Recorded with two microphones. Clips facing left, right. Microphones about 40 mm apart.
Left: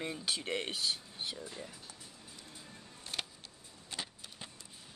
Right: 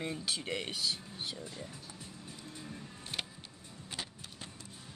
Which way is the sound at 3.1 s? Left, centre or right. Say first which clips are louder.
Right 1 dB; centre.